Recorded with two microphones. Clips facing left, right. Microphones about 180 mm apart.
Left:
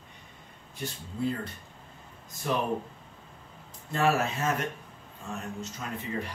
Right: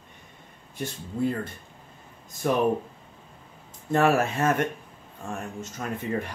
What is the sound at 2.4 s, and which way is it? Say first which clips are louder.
Speech: right 5 dB; 50° right (ahead or behind).